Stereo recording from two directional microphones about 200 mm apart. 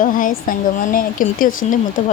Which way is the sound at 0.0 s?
45° left (ahead or behind).